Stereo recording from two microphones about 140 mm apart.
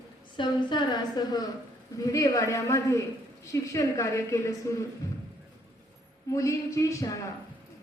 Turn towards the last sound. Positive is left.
turn(degrees=25)  # may be behind; listen again after turning